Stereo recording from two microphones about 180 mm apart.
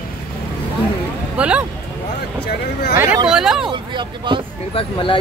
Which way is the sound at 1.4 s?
5° right (ahead or behind).